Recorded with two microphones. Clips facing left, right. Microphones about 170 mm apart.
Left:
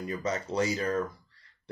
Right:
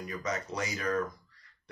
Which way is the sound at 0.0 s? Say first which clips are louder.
Left 3 dB; 30° left (ahead or behind).